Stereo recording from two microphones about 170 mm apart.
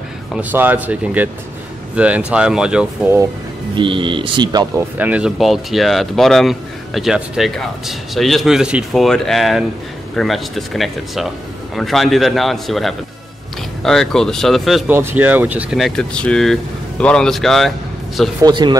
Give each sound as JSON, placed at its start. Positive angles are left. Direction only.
{"t": 0.3, "sound": "speech", "side_deg": -10}
{"t": 3.7, "sound": "speech", "side_deg": -30}
{"t": 4.7, "sound": "speech", "side_deg": -10}
{"t": 14.9, "sound": "speech", "side_deg": -10}
{"t": 18.4, "sound": "speech", "side_deg": -25}